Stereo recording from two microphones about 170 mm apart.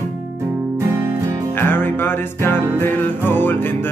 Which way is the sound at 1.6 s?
10° left (ahead or behind).